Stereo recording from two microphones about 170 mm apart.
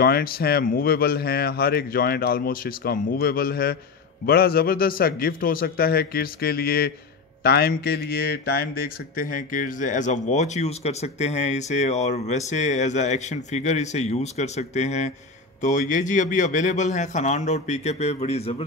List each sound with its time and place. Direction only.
0.0 s speech: 60° left (ahead or behind); by 18.6 s 35° left (ahead or behind)